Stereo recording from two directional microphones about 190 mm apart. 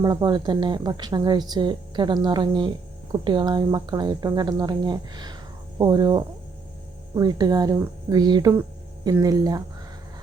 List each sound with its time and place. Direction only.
0.0 s a woman's voice: 20° right (ahead or behind)